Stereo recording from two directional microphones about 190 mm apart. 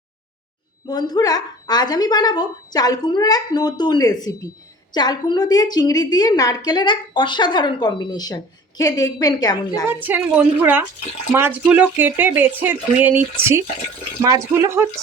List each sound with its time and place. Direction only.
0.9 s a woman's voice: 20° left (ahead or behind)
9.9 s speech: 10° right (ahead or behind)